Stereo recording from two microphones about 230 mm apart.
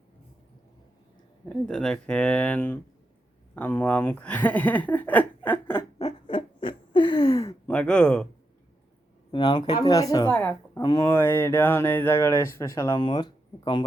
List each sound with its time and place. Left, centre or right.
1.5 s speech: centre
6.0 s owl: left; by 8.3 s centre
9.3 s speech: centre